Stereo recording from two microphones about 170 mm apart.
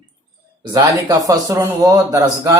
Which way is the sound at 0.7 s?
20° right (ahead or behind).